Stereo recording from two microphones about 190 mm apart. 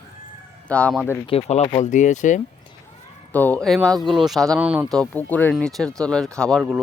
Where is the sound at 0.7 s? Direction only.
5° left (ahead or behind).